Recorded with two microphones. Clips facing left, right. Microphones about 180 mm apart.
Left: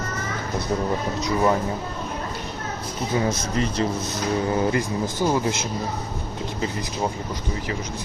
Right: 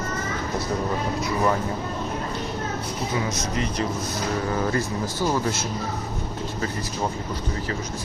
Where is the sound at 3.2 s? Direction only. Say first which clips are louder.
Left 3 dB; 30° left (ahead or behind).